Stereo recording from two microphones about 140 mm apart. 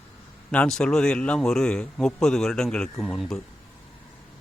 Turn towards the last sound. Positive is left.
turn(degrees=0)  # may be behind; listen again after turning